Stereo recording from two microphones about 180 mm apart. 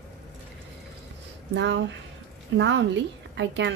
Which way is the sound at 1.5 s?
75° right (ahead or behind).